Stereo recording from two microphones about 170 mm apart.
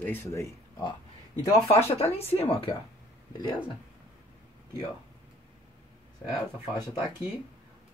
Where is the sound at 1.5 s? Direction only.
35° left (ahead or behind).